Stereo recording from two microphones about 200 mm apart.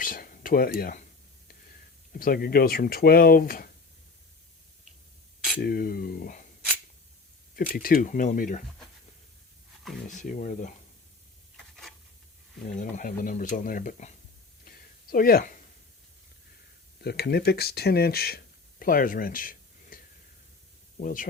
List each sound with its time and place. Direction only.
0.0 s a sound: 45° left (ahead or behind)
2.1 s speech: 45° left (ahead or behind)
5.5 s speech: 50° left (ahead or behind)
7.5 s speech: 45° left (ahead or behind)
10.1 s speech: 40° left (ahead or behind)
11.5 s stir: centre (ahead or behind)
12.6 s speech: 40° left (ahead or behind)
14.6 s a sound: 45° left (ahead or behind)
17.0 s speech: 55° left (ahead or behind)
21.0 s speech: 40° left (ahead or behind)